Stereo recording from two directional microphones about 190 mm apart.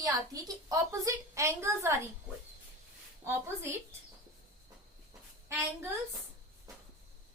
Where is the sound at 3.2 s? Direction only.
15° right (ahead or behind).